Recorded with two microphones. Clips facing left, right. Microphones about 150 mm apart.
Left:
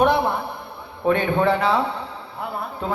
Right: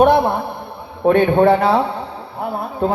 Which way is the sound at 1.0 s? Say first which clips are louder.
Right 7 dB; 45° right (ahead or behind).